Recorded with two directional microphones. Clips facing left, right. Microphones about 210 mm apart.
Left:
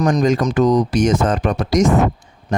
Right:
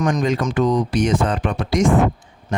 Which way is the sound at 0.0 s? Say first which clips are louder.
Left 4 dB; 35° left (ahead or behind).